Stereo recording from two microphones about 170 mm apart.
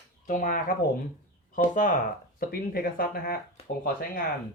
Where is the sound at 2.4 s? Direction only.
60° left (ahead or behind).